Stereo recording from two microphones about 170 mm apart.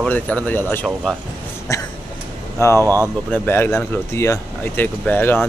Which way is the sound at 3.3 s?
10° left (ahead or behind).